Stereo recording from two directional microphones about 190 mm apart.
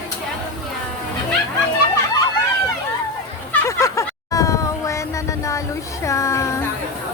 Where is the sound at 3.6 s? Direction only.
15° left (ahead or behind).